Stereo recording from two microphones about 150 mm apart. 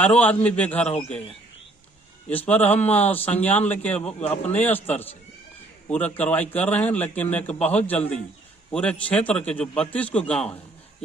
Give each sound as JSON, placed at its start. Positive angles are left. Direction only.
{"t": 0.2, "sound": "a man's voice", "side_deg": 10}
{"t": 2.2, "sound": "a man's voice", "side_deg": 10}
{"t": 4.2, "sound": "speech", "side_deg": 45}
{"t": 4.6, "sound": "a man's voice", "side_deg": 10}